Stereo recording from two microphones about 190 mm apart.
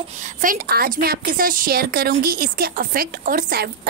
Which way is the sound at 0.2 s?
45° right (ahead or behind).